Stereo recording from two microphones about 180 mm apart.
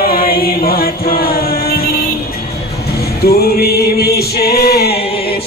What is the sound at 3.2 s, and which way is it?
Music, 60° left (ahead or behind).